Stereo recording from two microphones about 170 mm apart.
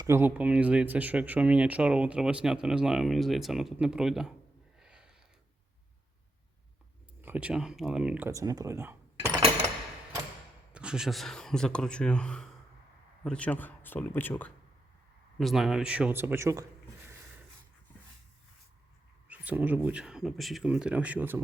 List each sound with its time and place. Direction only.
0.0 s speech: 15° right (ahead or behind)
4.8 s a sound: 5° right (ahead or behind)
7.2 s speech: 10° right (ahead or behind)
8.3 s speech: 20° right (ahead or behind)
10.7 s speech: 5° right (ahead or behind); by 14.5 s 10° left (ahead or behind)
15.4 s speech: centre (ahead or behind); by 16.6 s 15° right (ahead or behind)
19.3 s speech: 10° right (ahead or behind)